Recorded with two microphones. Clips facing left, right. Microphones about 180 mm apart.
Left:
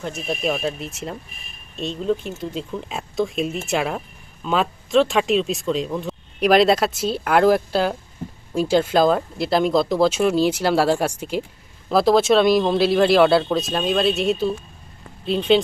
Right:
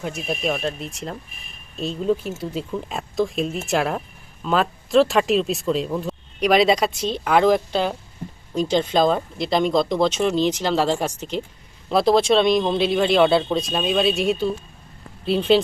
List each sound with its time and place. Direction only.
0.2 s speech: centre (ahead or behind)